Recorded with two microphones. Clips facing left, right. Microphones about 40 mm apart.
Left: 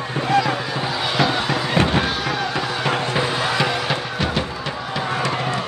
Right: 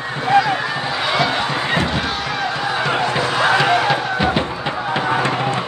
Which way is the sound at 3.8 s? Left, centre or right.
Centre.